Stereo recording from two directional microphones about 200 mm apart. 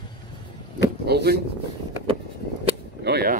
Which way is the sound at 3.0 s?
55° right (ahead or behind).